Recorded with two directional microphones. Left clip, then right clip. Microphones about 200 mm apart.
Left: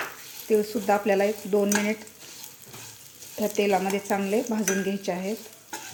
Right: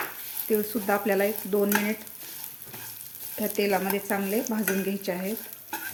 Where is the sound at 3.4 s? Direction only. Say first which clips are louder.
Left 2 dB; 5° left (ahead or behind).